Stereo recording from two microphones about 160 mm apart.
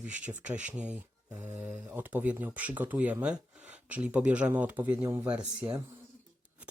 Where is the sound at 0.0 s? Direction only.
10° right (ahead or behind).